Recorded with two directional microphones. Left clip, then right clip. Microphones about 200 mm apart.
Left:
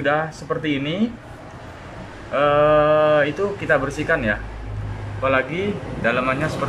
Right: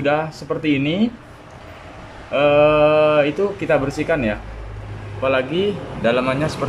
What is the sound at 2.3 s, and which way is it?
A man's voice, 5° right (ahead or behind).